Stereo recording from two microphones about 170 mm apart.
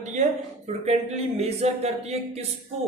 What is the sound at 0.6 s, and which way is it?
Speech, 40° right (ahead or behind).